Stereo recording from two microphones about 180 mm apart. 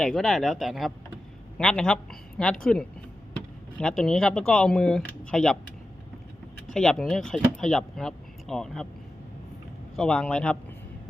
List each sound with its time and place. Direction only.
0.0 s speech: centre (ahead or behind)
6.7 s speech: 5° left (ahead or behind)
9.9 s speech: 5° left (ahead or behind)